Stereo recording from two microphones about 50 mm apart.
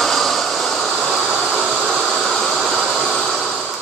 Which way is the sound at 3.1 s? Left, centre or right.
Centre.